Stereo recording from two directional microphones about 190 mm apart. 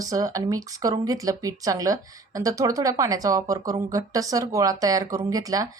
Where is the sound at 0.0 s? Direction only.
20° right (ahead or behind).